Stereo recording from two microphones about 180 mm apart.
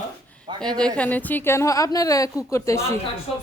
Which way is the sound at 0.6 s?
5° left (ahead or behind).